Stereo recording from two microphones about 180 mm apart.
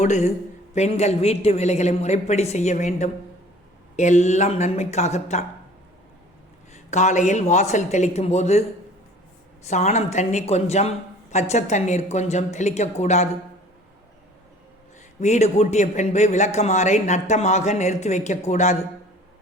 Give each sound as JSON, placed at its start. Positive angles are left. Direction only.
{"t": 0.0, "sound": "a man's voice", "side_deg": 40}
{"t": 6.7, "sound": "a man's voice", "side_deg": 40}
{"t": 9.6, "sound": "a man's voice", "side_deg": 40}
{"t": 15.2, "sound": "a man's voice", "side_deg": 40}